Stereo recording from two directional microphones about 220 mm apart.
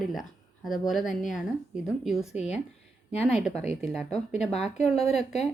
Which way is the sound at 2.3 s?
30° left (ahead or behind).